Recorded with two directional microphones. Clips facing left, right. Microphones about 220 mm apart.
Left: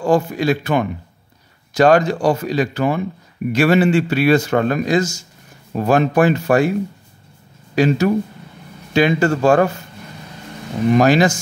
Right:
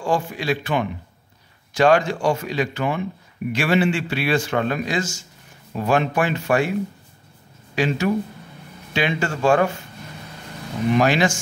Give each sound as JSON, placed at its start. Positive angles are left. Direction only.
{"t": 0.0, "sound": "a man's voice", "side_deg": 40}
{"t": 7.7, "sound": "speech", "side_deg": 40}
{"t": 11.0, "sound": "speech", "side_deg": 40}